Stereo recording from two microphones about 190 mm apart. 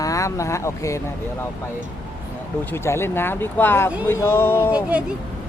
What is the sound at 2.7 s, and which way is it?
Speech, 15° left (ahead or behind).